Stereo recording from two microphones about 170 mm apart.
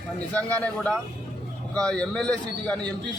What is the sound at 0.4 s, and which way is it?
A man's voice, 5° left (ahead or behind).